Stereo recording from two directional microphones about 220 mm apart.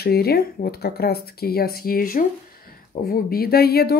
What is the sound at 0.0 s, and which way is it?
Speech, 45° left (ahead or behind).